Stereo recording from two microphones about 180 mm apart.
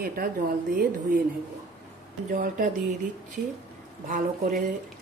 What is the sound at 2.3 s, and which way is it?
Speech, 50° right (ahead or behind).